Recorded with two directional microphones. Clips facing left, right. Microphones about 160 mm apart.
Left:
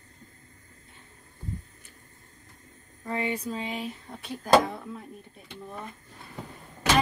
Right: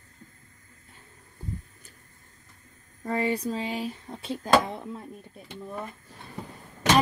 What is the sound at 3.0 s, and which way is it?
Speech, 35° right (ahead or behind).